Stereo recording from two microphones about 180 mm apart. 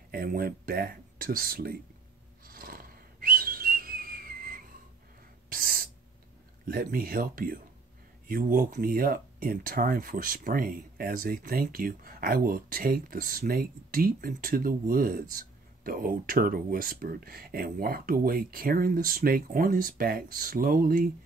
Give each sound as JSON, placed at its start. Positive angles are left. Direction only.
{"t": 0.1, "sound": "speech", "side_deg": -55}
{"t": 2.4, "sound": "whistle", "side_deg": -55}
{"t": 5.5, "sound": "owl", "side_deg": -55}
{"t": 6.6, "sound": "speech", "side_deg": -55}